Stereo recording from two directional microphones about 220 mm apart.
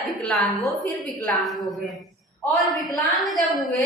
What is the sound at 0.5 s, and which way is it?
Speech, 30° left (ahead or behind).